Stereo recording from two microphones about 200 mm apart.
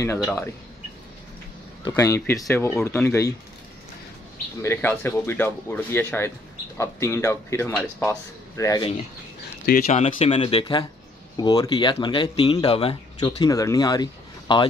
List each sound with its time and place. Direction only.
0.2 s speech: 10° left (ahead or behind)
1.9 s speech: 15° left (ahead or behind)
4.6 s speech: 10° left (ahead or behind)
9.8 s speech: 35° left (ahead or behind)